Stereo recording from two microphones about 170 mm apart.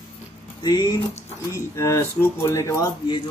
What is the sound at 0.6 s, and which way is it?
A man's voice, 25° left (ahead or behind).